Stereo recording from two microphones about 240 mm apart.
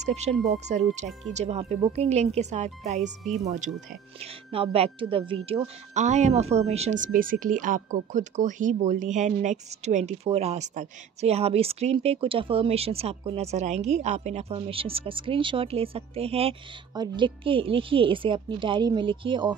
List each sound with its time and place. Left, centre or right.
0.0 s a woman's voice: right